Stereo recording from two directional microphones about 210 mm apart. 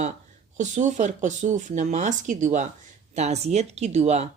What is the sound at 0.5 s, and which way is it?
Speech, 35° right (ahead or behind).